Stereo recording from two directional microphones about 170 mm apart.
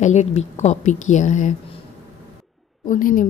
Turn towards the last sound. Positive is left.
turn(degrees=50)  # may be behind; listen again after turning